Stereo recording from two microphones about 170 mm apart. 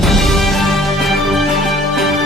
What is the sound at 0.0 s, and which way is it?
Music, centre (ahead or behind).